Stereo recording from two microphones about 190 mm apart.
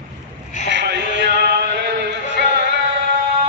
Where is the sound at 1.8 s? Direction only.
70° right (ahead or behind).